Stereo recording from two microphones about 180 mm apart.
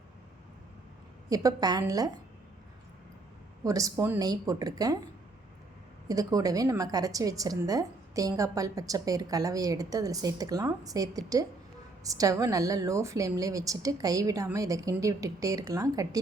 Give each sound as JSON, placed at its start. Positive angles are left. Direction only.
{"t": 1.3, "sound": "a woman's voice", "side_deg": -20}
{"t": 3.6, "sound": "a woman's voice", "side_deg": -20}
{"t": 6.1, "sound": "a woman's voice", "side_deg": -20}